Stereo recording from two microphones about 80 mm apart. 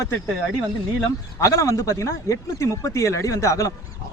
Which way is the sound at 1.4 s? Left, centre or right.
Left.